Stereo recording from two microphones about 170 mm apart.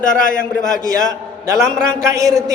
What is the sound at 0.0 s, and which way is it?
Speech, 55° left (ahead or behind).